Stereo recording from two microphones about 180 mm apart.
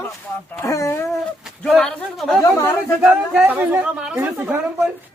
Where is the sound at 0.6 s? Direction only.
15° left (ahead or behind).